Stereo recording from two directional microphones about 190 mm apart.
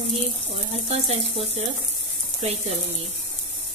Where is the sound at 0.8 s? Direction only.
30° right (ahead or behind).